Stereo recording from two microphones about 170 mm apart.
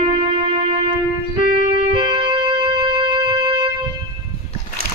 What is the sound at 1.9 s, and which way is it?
Music, 30° right (ahead or behind).